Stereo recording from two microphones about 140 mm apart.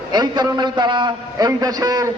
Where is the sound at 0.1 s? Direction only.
30° right (ahead or behind).